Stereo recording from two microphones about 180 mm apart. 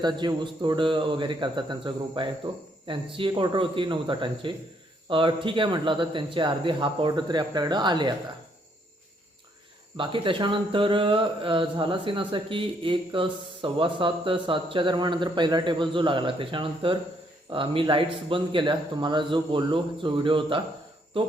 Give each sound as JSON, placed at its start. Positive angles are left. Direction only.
{"t": 0.0, "sound": "speech", "side_deg": -25}
{"t": 10.0, "sound": "speech", "side_deg": -30}